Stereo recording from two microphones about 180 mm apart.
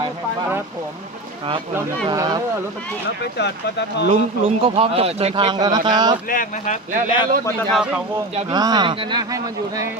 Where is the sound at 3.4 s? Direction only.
70° left (ahead or behind).